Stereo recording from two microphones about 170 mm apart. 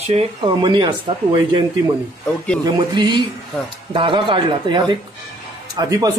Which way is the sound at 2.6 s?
25° right (ahead or behind).